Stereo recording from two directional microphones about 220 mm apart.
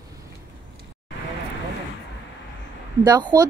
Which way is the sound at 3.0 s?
20° right (ahead or behind).